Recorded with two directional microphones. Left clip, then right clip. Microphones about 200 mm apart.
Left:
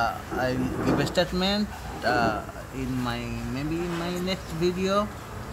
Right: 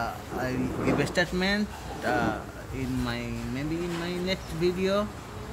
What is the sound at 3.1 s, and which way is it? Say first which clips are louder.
Speech: left 2 dB; centre (ahead or behind).